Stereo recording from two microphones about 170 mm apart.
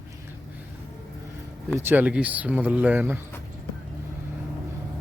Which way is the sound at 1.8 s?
10° right (ahead or behind).